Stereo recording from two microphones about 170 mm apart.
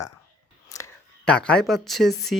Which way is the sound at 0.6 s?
20° left (ahead or behind).